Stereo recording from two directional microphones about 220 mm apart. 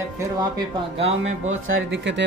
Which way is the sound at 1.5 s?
65° right (ahead or behind).